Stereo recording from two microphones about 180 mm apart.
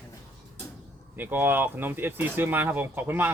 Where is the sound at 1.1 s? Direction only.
10° right (ahead or behind).